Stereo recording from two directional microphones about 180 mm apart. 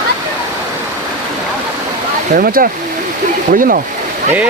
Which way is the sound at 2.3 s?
55° right (ahead or behind).